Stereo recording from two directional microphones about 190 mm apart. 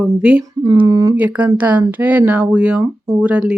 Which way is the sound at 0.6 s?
20° right (ahead or behind).